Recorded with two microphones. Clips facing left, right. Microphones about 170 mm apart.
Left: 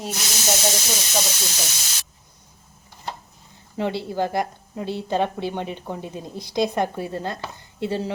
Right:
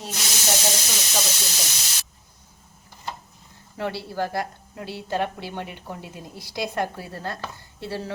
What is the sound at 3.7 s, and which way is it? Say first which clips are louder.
A woman's voice: left 4 dB; 20° left (ahead or behind).